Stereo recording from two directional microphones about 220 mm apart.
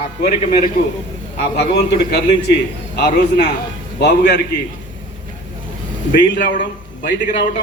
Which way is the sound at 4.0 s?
50° left (ahead or behind).